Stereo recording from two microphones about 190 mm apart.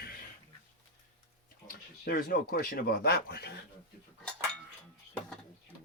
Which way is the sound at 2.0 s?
55° left (ahead or behind).